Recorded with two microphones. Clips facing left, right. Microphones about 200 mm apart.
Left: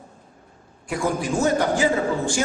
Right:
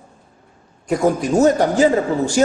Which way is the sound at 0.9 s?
40° right (ahead or behind).